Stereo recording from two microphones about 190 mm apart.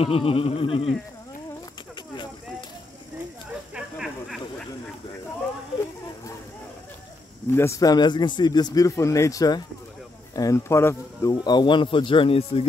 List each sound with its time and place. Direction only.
0.0 s speech: 30° left (ahead or behind)
3.7 s a sound: centre (ahead or behind)
7.5 s speech: 15° left (ahead or behind)